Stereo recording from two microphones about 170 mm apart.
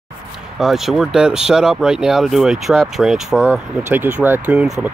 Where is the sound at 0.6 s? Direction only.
Centre (ahead or behind).